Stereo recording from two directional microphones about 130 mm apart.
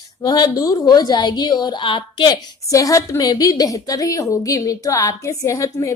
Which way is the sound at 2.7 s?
25° left (ahead or behind).